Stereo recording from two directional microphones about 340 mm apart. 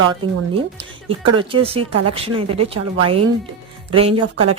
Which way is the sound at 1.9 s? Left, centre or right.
Right.